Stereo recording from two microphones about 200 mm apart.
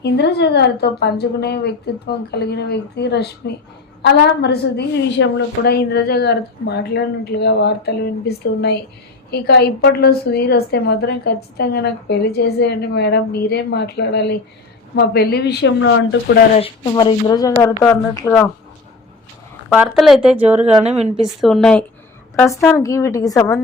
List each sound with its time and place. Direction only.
0.0 s a woman's voice: 55° left (ahead or behind)
16.6 s speech: 25° left (ahead or behind)
19.7 s speech: centre (ahead or behind)
20.8 s a woman's voice: 30° right (ahead or behind)
21.4 s speech: centre (ahead or behind)
22.4 s speech: 15° left (ahead or behind)